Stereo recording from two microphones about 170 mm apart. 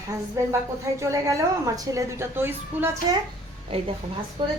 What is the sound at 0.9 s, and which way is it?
A woman's voice, 20° right (ahead or behind).